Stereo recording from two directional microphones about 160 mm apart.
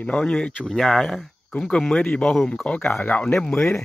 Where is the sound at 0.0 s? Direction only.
5° left (ahead or behind).